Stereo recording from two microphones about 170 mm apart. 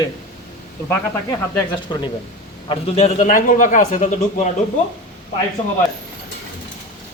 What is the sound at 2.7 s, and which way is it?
A man's voice, 40° left (ahead or behind).